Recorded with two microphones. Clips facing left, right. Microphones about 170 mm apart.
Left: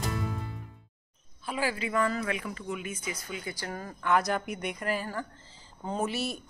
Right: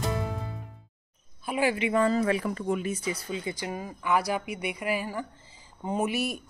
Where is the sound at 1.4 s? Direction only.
15° right (ahead or behind).